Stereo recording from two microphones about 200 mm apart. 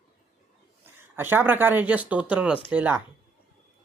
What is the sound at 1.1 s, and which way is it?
Speech, 10° right (ahead or behind).